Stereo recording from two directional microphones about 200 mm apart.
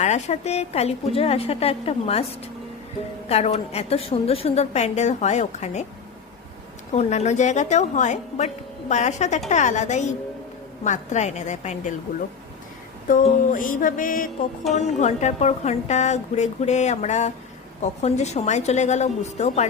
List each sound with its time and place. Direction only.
0.0 s a woman's voice: 35° left (ahead or behind)
3.2 s a woman's voice: 30° left (ahead or behind)
6.9 s a woman's voice: 35° left (ahead or behind)
13.1 s music: 40° left (ahead or behind)
14.7 s a woman's voice: 35° left (ahead or behind)